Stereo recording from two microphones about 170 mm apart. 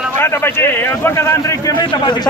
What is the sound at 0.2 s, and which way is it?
A man's voice, 15° left (ahead or behind).